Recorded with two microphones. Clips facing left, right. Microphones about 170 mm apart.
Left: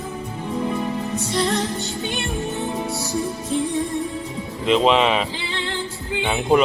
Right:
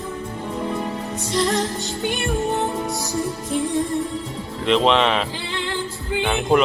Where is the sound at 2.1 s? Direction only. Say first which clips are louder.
Right 6 dB; 20° left (ahead or behind).